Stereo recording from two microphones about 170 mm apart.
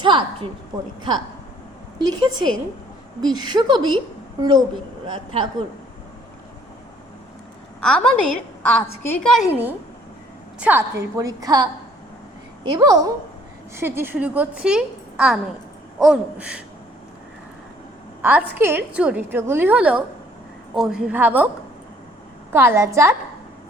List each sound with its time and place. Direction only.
0.0 s a woman's voice: 30° right (ahead or behind)
2.0 s a woman's voice: 25° right (ahead or behind)
7.8 s a woman's voice: 5° left (ahead or behind)
9.5 s a woman's voice: 10° right (ahead or behind)
18.2 s a woman's voice: 10° right (ahead or behind)
22.5 s a woman's voice: 15° right (ahead or behind)